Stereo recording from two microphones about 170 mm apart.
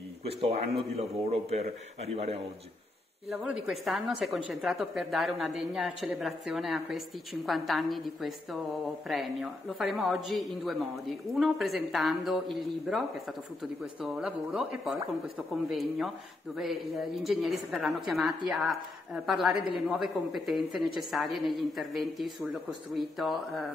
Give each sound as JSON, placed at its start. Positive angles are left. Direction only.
{"t": 0.3, "sound": "speech", "side_deg": -35}
{"t": 3.3, "sound": "a woman's voice", "side_deg": -5}
{"t": 14.0, "sound": "a woman's voice", "side_deg": -5}